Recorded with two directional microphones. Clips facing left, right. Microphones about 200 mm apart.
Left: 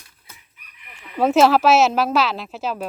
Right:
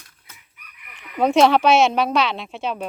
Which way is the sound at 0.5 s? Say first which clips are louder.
Even; 25° left (ahead or behind).